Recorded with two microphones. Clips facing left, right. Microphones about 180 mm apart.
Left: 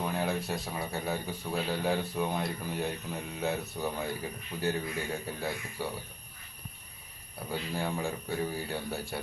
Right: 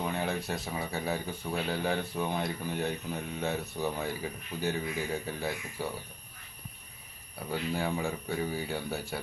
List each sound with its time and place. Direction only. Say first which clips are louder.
0.0 s speech: left 1 dB; centre (ahead or behind)
7.5 s speech: right 2 dB; centre (ahead or behind)